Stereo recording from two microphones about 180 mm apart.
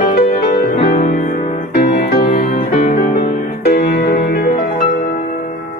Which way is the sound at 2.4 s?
55° left (ahead or behind).